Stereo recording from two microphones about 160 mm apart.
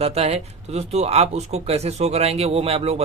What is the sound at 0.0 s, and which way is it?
Speech, 40° right (ahead or behind).